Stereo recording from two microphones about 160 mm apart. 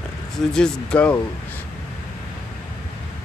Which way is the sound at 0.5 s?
5° left (ahead or behind).